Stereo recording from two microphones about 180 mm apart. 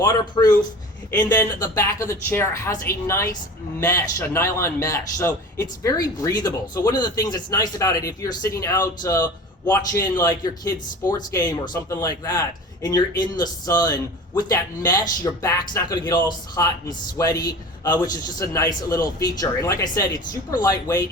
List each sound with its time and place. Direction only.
0.0 s a man's voice: 20° left (ahead or behind)